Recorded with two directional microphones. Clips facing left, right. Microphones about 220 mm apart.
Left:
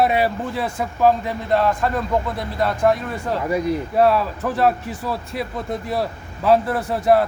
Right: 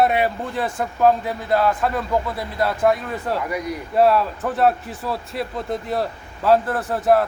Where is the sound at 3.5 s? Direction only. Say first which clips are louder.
Left 6 dB; 25° left (ahead or behind).